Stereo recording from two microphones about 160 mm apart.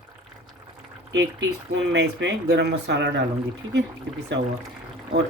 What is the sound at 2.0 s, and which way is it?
Speech, 90° right.